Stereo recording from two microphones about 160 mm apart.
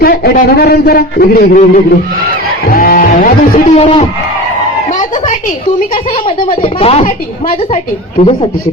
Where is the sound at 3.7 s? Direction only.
45° left (ahead or behind).